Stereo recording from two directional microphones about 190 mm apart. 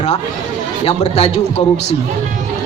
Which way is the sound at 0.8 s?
35° left (ahead or behind).